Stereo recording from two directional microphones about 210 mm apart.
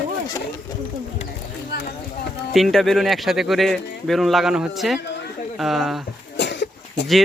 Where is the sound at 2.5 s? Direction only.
Centre (ahead or behind).